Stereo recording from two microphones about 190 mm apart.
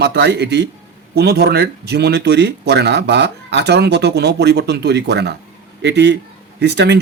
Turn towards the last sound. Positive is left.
turn(degrees=-65)  # may be behind; listen again after turning